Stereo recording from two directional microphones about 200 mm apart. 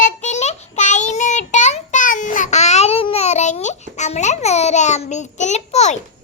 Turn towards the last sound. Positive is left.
turn(degrees=35)  # may be behind; listen again after turning